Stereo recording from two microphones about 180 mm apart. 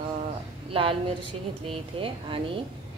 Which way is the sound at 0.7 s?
30° right (ahead or behind).